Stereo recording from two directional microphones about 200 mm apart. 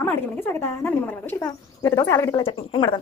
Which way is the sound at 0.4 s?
10° left (ahead or behind).